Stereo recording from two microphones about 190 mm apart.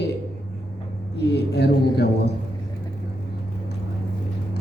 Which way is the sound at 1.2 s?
60° left (ahead or behind).